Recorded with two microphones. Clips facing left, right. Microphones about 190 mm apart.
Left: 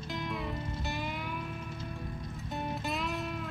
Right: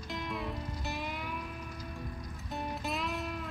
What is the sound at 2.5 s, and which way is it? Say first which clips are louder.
Music: left 1 dB; centre (ahead or behind).